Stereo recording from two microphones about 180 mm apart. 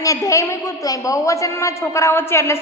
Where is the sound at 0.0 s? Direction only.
20° left (ahead or behind).